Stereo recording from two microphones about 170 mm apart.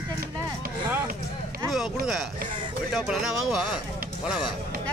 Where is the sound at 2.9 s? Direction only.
Centre (ahead or behind).